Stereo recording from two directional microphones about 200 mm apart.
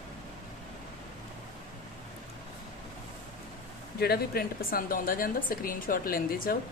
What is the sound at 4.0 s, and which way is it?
A woman's voice, 50° left (ahead or behind).